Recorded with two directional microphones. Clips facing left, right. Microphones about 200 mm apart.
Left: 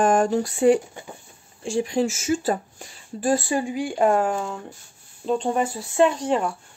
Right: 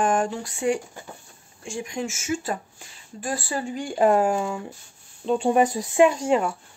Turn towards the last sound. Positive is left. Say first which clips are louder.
# right 1 dB
turn(degrees=-5)  # may be behind; listen again after turning